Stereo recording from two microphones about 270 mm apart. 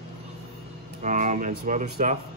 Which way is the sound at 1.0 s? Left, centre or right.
Right.